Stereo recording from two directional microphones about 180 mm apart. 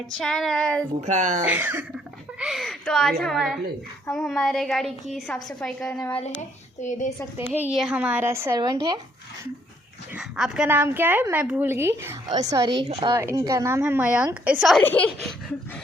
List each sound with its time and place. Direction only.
0.2 s a woman's voice: 5° left (ahead or behind)
1.0 s speech: 40° right (ahead or behind)
1.5 s a woman's voice: 10° right (ahead or behind)
2.4 s a woman's voice: centre (ahead or behind)
7.5 s a woman's voice: 5° right (ahead or behind); by 9.0 s 20° right (ahead or behind)
10.2 s a woman's voice: 5° right (ahead or behind); by 13.1 s 30° right (ahead or behind)
13.1 s a woman's voice: 15° right (ahead or behind)
14.8 s a woman's voice: 10° left (ahead or behind)